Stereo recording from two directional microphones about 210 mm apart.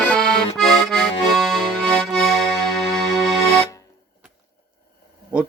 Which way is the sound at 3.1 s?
15° left (ahead or behind).